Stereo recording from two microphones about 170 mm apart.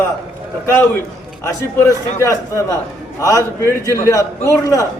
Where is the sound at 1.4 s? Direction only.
20° left (ahead or behind).